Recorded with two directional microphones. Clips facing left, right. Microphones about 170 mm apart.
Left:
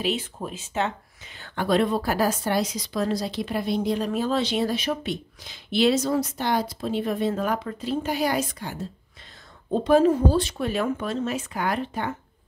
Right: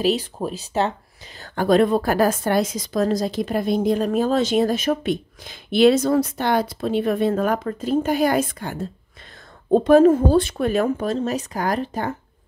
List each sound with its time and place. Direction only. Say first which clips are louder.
0.0 s speech: right 6 dB; 35° right (ahead or behind)